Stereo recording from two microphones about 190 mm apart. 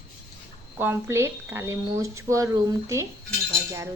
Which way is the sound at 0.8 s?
10° right (ahead or behind).